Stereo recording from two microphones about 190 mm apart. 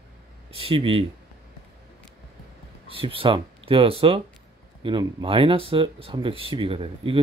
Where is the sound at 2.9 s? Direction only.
30° right (ahead or behind).